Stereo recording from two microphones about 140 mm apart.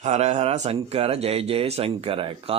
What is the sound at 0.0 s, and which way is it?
Speech, 50° right (ahead or behind).